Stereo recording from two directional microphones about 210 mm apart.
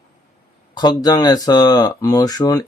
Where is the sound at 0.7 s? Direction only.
20° left (ahead or behind).